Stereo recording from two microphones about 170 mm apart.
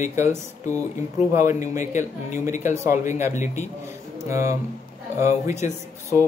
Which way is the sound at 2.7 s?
15° right (ahead or behind).